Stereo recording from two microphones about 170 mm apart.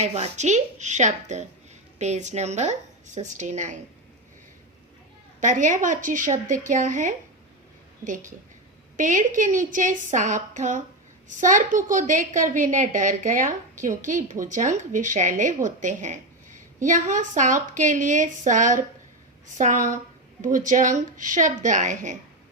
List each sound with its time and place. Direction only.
0.0 s a woman's voice: 40° right (ahead or behind)
5.4 s a woman's voice: 50° right (ahead or behind)